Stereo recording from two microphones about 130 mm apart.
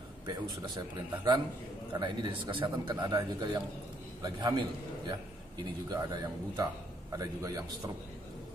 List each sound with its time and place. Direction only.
0.3 s a man's voice: 35° right (ahead or behind)